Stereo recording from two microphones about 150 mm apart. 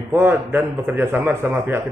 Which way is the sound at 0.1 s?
15° right (ahead or behind).